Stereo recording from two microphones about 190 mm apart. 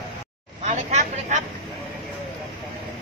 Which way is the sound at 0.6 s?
35° right (ahead or behind).